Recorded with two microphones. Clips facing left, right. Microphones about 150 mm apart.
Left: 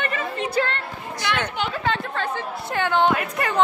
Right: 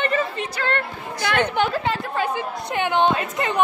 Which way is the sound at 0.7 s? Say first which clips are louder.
Right 5 dB; 50° right (ahead or behind).